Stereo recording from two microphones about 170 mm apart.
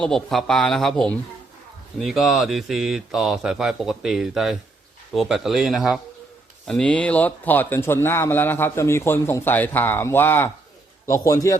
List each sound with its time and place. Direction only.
0.0 s a man's voice: centre (ahead or behind); by 11.5 s 20° left (ahead or behind)